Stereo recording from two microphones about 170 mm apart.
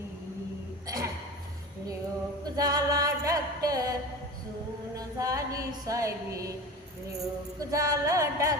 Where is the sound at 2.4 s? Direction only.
20° right (ahead or behind).